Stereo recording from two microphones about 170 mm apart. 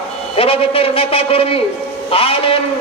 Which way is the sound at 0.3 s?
35° left (ahead or behind).